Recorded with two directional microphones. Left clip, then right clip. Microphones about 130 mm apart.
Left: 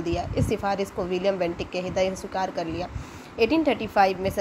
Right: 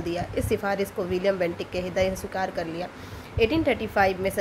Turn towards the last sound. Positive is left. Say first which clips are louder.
# left 2 dB
turn(degrees=15)  # may be behind; listen again after turning